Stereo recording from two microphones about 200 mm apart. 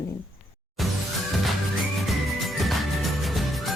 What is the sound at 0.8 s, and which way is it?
Music, centre (ahead or behind).